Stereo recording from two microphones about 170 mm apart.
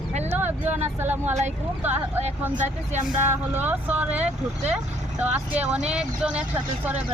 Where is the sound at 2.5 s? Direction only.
40° right (ahead or behind).